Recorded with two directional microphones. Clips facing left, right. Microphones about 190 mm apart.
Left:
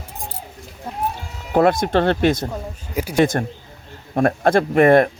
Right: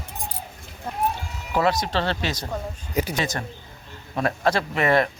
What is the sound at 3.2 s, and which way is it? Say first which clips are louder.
Speech: left 11 dB; 55° left (ahead or behind).